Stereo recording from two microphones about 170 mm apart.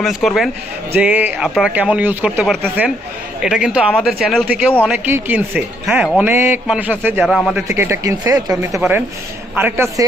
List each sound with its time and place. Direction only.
0.0 s speech: centre (ahead or behind)
7.7 s speech: 15° right (ahead or behind)